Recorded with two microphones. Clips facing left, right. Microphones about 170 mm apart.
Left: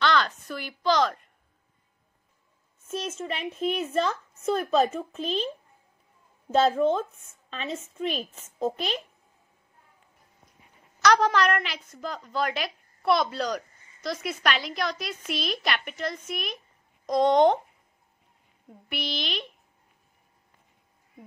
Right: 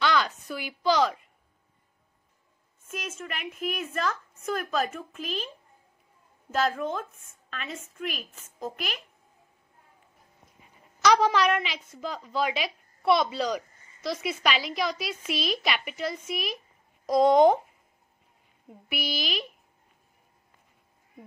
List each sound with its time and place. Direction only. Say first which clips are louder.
0.0 s a sound: left 1 dB; 10° right (ahead or behind)
0.5 s a woman's voice: right 1 dB; 10° right (ahead or behind)
2.9 s speech: left 5 dB; 30° left (ahead or behind)
6.5 s speech: left 6 dB; 30° left (ahead or behind)
11.0 s a woman's voice: even; centre (ahead or behind)
18.7 s a woman's voice: right 1 dB; 5° right (ahead or behind)